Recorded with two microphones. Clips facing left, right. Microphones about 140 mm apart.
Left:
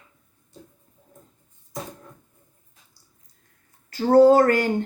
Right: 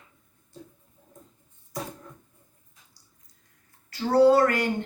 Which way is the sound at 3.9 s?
45° left (ahead or behind).